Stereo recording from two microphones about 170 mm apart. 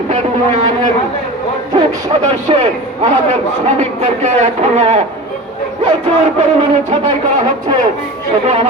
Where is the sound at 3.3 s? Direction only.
40° right (ahead or behind).